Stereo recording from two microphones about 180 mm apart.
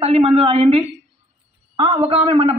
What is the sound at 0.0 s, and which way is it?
Speech, 35° right (ahead or behind).